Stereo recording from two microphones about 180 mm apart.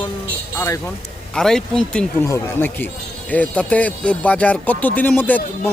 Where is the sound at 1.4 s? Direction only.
5° left (ahead or behind).